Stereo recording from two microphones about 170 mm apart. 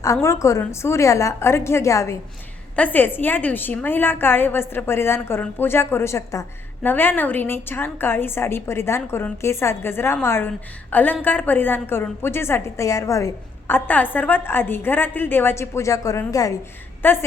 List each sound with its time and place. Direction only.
0.0 s a woman's voice: 15° left (ahead or behind)